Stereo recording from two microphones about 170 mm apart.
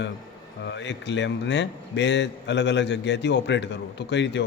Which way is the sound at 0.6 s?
90° left.